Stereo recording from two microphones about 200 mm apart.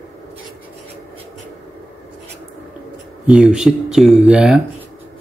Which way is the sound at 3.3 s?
5° right (ahead or behind).